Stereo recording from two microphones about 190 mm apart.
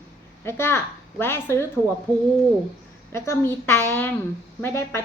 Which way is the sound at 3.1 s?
15° left (ahead or behind).